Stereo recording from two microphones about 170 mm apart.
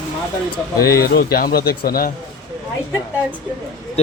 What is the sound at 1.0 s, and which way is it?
Speech, 65° left (ahead or behind).